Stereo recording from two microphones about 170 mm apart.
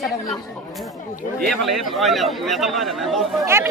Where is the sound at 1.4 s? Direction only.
Centre (ahead or behind).